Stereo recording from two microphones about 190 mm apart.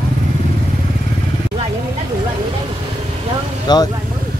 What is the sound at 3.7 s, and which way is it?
Speech, 20° left (ahead or behind).